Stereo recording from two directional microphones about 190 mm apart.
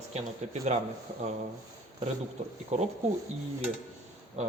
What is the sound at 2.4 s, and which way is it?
Speech, 35° right (ahead or behind).